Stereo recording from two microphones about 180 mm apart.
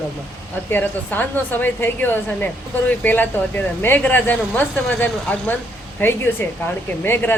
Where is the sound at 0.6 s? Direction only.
10° left (ahead or behind).